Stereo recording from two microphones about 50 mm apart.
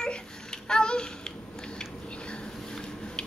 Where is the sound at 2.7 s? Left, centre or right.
Centre.